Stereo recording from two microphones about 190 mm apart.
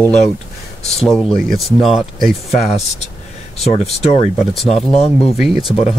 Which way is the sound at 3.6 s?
35° left (ahead or behind).